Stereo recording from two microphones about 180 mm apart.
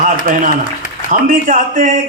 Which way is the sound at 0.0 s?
45° right (ahead or behind).